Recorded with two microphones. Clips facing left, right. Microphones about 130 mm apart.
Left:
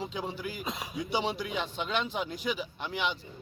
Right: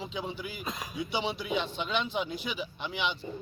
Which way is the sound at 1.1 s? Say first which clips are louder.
Left 2 dB; 40° left (ahead or behind).